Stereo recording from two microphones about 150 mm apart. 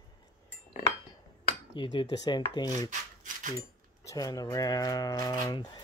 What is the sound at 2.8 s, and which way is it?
Rub, 60° right (ahead or behind).